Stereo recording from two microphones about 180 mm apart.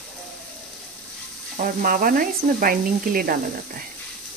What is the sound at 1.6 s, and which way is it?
Speech, 50° right (ahead or behind).